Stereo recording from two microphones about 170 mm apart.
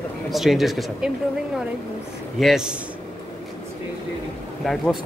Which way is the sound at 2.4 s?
5° right (ahead or behind).